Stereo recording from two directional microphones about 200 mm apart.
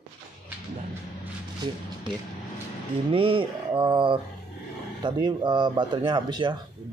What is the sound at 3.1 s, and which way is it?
Speech, 25° right (ahead or behind).